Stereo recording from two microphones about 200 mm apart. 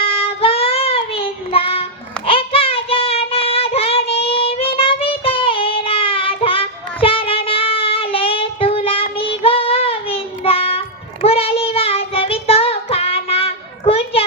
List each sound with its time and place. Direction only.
0.0 s child singing: 30° left (ahead or behind)